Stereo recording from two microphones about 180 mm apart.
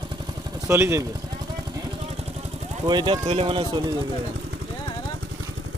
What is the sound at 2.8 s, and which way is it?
Speech, 25° right (ahead or behind).